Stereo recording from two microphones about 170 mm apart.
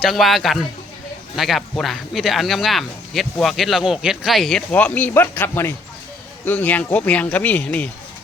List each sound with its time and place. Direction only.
0.0 s speech: centre (ahead or behind)